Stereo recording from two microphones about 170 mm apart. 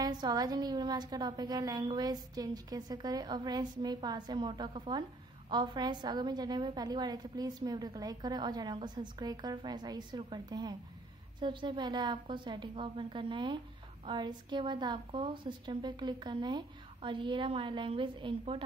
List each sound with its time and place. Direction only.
0.0 s a woman's voice: 25° right (ahead or behind)